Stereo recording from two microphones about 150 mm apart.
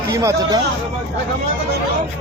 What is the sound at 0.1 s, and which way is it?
Speech, 20° right (ahead or behind).